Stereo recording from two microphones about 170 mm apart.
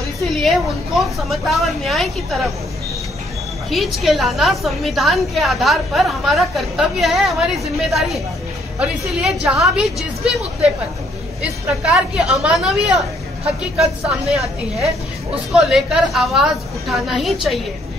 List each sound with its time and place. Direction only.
0.2 s a woman's voice: centre (ahead or behind)
3.7 s a woman's voice: centre (ahead or behind)
11.4 s a woman's voice: 5° right (ahead or behind)